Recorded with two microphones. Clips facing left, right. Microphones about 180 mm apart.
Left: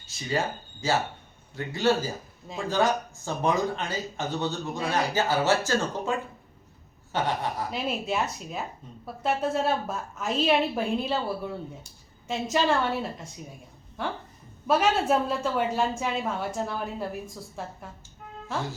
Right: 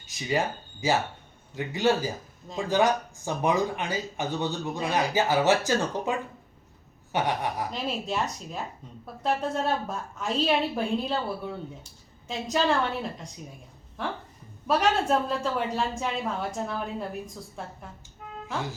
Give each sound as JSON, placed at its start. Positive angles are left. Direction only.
{"t": 0.0, "sound": "speech", "side_deg": -15}
{"t": 7.7, "sound": "a woman's voice", "side_deg": 5}
{"t": 12.3, "sound": "a woman's voice", "side_deg": 5}
{"t": 14.7, "sound": "a woman's voice", "side_deg": 5}